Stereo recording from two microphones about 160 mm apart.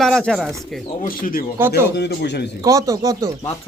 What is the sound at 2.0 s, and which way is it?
Speech, 90° left.